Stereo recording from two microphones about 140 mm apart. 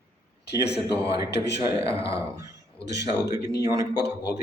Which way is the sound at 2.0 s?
40° left (ahead or behind).